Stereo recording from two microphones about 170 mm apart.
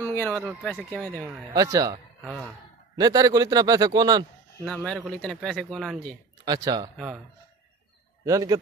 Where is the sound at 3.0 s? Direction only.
20° right (ahead or behind).